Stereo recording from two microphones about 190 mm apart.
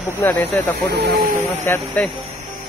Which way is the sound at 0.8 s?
55° right (ahead or behind).